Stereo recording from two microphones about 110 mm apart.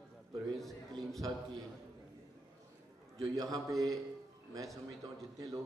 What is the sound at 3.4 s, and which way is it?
Speech, 30° right (ahead or behind).